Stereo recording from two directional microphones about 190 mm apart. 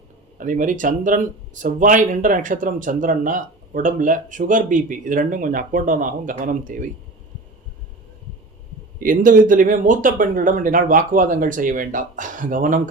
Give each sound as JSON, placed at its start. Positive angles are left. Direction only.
{"t": 0.3, "sound": "speech", "side_deg": -45}
{"t": 9.0, "sound": "speech", "side_deg": -45}